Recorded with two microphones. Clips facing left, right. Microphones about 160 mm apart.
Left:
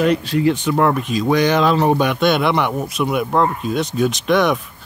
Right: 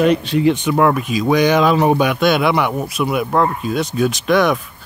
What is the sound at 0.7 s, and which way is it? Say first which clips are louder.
Speech: right 2 dB; 5° right (ahead or behind).